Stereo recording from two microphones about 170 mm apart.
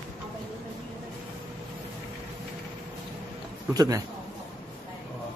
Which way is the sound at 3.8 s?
20° right (ahead or behind).